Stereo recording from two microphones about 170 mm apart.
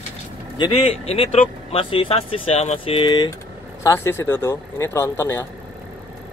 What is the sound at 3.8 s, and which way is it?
Speech, 15° left (ahead or behind).